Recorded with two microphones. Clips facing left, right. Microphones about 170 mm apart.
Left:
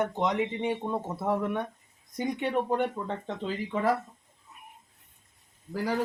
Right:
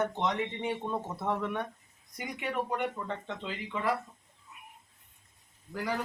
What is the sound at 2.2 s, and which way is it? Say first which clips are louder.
Speech: left 6 dB; 30° left (ahead or behind).